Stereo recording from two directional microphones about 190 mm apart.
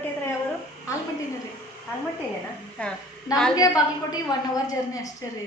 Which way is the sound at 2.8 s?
5° left (ahead or behind).